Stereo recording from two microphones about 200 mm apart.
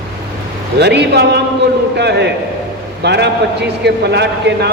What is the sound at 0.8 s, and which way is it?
A man's voice, 55° right (ahead or behind).